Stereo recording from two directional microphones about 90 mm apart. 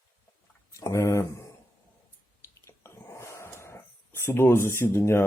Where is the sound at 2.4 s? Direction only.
30° left (ahead or behind).